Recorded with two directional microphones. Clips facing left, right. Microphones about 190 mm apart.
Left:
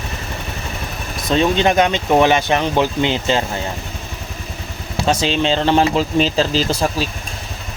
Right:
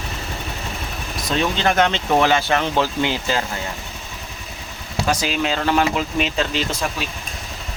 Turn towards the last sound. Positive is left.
turn(degrees=35)  # may be behind; listen again after turning